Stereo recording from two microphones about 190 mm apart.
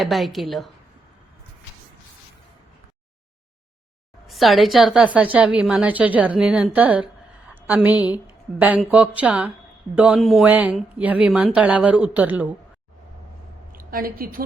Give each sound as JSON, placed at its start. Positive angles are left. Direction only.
{"t": 0.0, "sound": "a woman's voice", "side_deg": 0}
{"t": 4.3, "sound": "a woman's voice", "side_deg": 0}
{"t": 13.7, "sound": "a woman's voice", "side_deg": -50}